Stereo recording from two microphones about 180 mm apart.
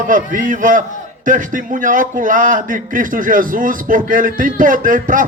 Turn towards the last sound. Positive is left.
turn(degrees=-50)  # may be behind; listen again after turning